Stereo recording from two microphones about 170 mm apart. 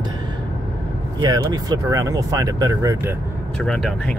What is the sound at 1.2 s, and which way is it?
Speech, 25° right (ahead or behind).